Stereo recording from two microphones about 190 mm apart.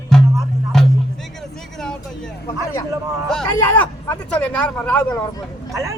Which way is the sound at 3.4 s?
15° left (ahead or behind).